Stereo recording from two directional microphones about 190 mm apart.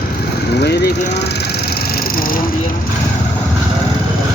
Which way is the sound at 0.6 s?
60° left (ahead or behind).